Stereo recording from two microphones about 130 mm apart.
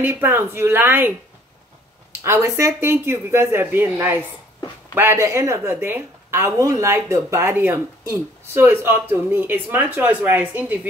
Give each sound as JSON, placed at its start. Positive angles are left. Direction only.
{"t": 0.0, "sound": "speech", "side_deg": -15}
{"t": 2.2, "sound": "speech", "side_deg": -20}